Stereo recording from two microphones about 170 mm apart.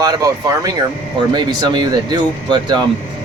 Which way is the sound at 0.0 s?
20° right (ahead or behind).